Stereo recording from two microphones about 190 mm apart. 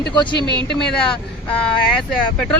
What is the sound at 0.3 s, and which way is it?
Speech, 25° right (ahead or behind).